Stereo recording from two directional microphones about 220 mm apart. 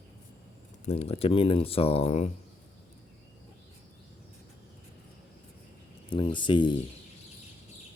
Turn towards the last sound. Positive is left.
turn(degrees=20)  # may be behind; listen again after turning